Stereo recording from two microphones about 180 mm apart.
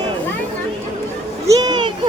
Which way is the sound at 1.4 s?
20° right (ahead or behind).